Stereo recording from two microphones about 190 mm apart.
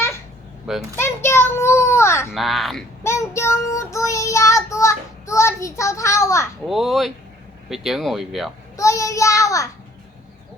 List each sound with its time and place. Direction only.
0.9 s a child's voice: 15° left (ahead or behind)
2.3 s speech: centre (ahead or behind)
3.0 s child singing: 15° left (ahead or behind)
6.7 s speech: centre (ahead or behind)
8.7 s a child's voice: 15° left (ahead or behind)